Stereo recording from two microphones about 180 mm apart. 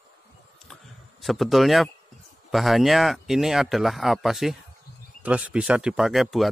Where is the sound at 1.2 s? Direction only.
Centre (ahead or behind).